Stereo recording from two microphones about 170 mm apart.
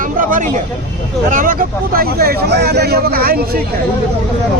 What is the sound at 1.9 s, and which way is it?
Speech, 60° right (ahead or behind).